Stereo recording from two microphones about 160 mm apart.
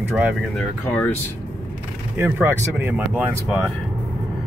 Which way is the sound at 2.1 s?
15° right (ahead or behind).